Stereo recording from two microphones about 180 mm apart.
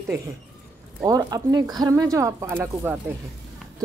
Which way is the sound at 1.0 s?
20° right (ahead or behind).